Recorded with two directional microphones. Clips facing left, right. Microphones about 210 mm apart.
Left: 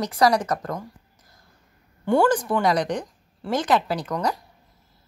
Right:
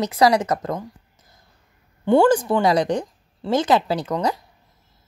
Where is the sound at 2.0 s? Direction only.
25° right (ahead or behind).